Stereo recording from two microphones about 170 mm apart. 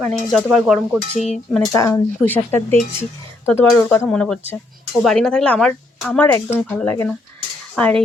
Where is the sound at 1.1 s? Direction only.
45° left (ahead or behind).